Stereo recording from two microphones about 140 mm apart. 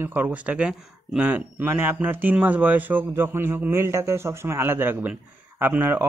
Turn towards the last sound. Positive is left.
turn(degrees=-15)  # may be behind; listen again after turning